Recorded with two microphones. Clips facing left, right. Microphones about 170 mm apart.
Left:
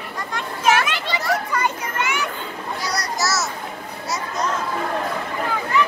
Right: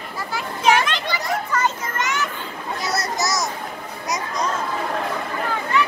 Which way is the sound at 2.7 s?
25° right (ahead or behind).